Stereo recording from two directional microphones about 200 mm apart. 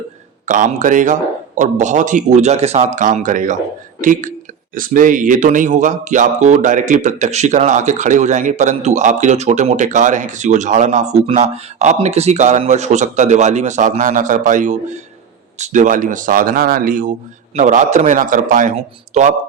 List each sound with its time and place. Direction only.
0.4 s speech: 40° right (ahead or behind)